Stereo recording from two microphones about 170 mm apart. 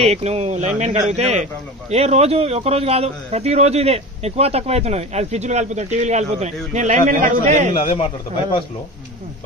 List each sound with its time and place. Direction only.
0.0 s a man's voice: 40° right (ahead or behind)